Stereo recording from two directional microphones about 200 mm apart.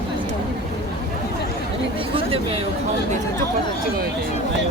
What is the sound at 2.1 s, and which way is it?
Speech, 30° right (ahead or behind).